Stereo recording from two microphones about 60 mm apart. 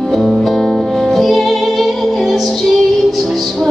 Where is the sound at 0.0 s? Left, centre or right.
Centre.